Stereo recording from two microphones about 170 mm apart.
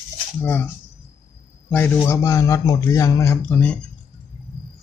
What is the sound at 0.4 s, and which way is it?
Speech, 10° left (ahead or behind).